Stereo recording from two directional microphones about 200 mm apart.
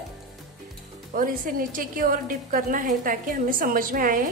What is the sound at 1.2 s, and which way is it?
A woman's voice, 45° right (ahead or behind).